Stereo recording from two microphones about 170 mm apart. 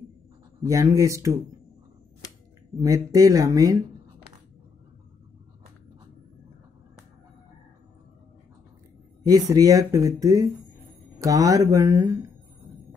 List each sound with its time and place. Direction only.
0.7 s speech: 20° right (ahead or behind)
2.8 s speech: 20° right (ahead or behind)
9.3 s speech: 20° right (ahead or behind)